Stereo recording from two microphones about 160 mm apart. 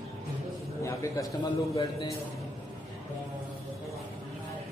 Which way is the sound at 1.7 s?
20° left (ahead or behind).